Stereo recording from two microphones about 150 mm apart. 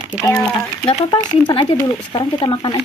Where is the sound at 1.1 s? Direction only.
30° left (ahead or behind).